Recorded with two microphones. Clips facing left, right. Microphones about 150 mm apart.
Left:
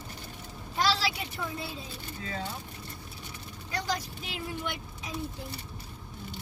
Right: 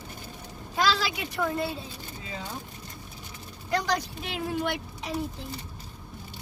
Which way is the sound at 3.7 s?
75° right (ahead or behind).